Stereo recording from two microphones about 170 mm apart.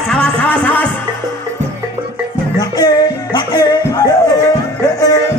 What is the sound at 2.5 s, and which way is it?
Music, 25° left (ahead or behind).